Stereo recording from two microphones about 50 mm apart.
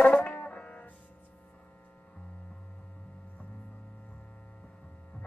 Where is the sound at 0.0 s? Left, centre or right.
Left.